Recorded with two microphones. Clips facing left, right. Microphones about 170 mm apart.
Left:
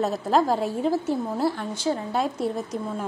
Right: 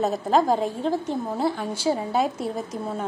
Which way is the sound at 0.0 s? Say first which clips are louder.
Right 1 dB; centre (ahead or behind).